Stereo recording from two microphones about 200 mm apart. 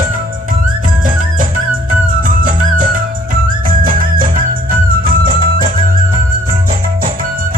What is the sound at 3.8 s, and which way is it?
Music, 45° right (ahead or behind).